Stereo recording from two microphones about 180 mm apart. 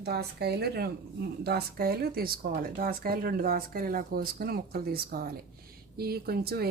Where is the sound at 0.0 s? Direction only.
65° right (ahead or behind).